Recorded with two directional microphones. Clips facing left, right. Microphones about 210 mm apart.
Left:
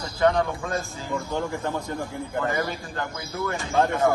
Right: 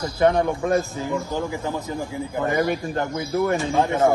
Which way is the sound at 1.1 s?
5° right (ahead or behind).